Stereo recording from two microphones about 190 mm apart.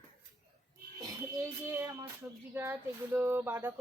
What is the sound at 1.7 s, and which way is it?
Music, 15° right (ahead or behind).